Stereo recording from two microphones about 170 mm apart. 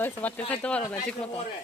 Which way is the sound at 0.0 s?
10° left (ahead or behind).